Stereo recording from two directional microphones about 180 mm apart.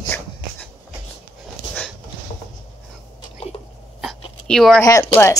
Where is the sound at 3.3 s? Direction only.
35° left (ahead or behind).